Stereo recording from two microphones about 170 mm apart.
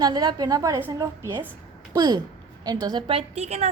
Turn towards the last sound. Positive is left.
turn(degrees=-40)  # may be behind; listen again after turning